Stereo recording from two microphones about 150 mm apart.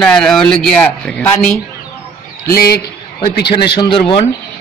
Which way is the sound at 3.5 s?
35° left (ahead or behind).